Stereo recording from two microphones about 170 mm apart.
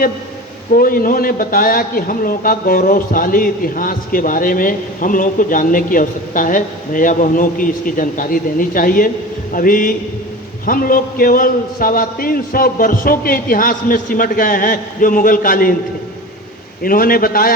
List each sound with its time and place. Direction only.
0.7 s a man's voice: 55° left (ahead or behind)
16.8 s a man's voice: 60° left (ahead or behind)